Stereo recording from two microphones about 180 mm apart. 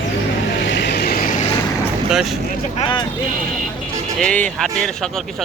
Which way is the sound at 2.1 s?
Centre (ahead or behind).